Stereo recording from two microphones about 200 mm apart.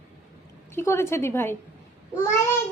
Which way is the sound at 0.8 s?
15° left (ahead or behind).